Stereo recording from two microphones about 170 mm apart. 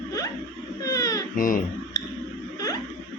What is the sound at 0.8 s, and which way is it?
Baby cry, 20° left (ahead or behind).